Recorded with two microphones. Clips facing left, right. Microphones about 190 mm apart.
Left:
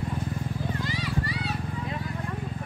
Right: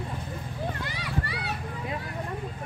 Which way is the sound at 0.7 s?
60° right (ahead or behind).